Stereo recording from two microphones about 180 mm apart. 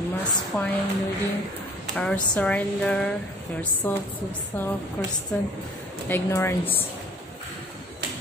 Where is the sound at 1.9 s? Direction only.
5° left (ahead or behind).